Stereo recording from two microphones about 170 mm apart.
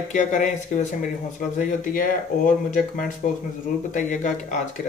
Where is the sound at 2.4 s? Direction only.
50° left (ahead or behind).